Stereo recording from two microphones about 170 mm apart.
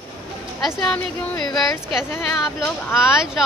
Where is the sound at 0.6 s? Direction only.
Centre (ahead or behind).